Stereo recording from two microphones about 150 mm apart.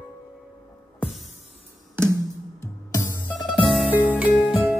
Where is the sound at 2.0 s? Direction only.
15° right (ahead or behind).